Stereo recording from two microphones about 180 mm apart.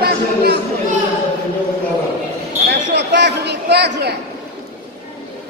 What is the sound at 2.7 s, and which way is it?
Basketball bounce, 75° right (ahead or behind).